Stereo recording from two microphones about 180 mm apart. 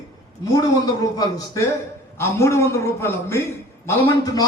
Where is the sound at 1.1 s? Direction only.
20° left (ahead or behind).